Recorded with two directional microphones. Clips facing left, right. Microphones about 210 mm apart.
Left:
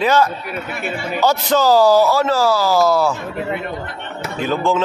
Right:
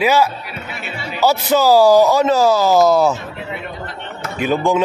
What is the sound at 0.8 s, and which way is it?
Music, 50° left (ahead or behind).